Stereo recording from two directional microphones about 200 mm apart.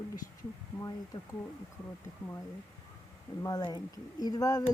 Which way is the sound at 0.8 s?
20° left (ahead or behind).